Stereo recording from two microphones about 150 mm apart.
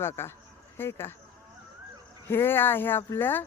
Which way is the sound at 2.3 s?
15° left (ahead or behind).